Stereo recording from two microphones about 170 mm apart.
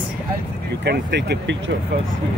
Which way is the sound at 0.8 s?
85° right.